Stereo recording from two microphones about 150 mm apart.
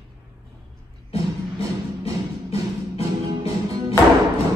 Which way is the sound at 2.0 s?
40° left (ahead or behind).